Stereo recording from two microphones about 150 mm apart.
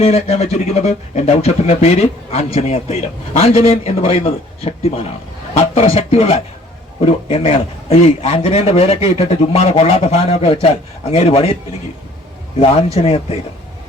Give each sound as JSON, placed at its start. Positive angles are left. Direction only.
{"t": 0.0, "sound": "a man's voice", "side_deg": 45}
{"t": 12.5, "sound": "a man's voice", "side_deg": 40}